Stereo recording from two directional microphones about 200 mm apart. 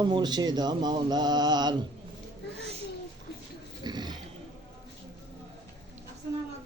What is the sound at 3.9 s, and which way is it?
Roaring cats, 20° right (ahead or behind).